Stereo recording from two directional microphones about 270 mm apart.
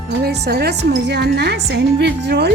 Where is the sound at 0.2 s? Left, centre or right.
Right.